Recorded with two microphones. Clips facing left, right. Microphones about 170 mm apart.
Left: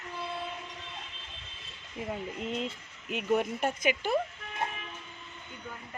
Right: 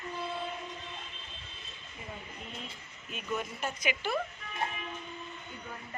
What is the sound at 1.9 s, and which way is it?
Speech, 90° left.